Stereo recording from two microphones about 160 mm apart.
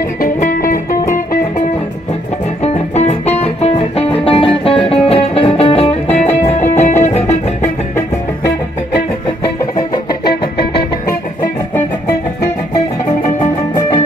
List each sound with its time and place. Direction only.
0.2 s music: 60° left (ahead or behind)
2.6 s music: 45° left (ahead or behind)